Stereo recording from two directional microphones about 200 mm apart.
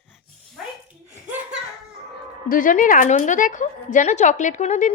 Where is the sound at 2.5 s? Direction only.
40° left (ahead or behind).